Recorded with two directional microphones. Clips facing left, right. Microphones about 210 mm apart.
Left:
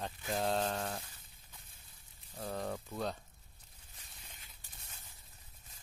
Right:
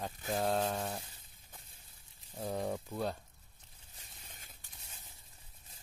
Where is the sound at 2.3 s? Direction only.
10° right (ahead or behind).